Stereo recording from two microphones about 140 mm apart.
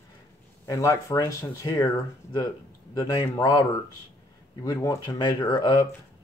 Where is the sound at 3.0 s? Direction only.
35° left (ahead or behind).